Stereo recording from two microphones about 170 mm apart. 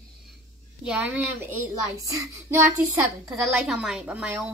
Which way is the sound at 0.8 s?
10° right (ahead or behind).